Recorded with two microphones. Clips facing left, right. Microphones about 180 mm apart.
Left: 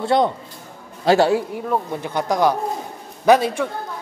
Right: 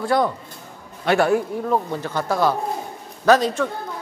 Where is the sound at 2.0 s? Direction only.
15° left (ahead or behind).